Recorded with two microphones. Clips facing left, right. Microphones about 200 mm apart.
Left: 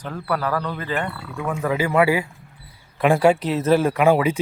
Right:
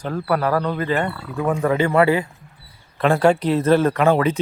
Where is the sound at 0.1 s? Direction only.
45° right (ahead or behind).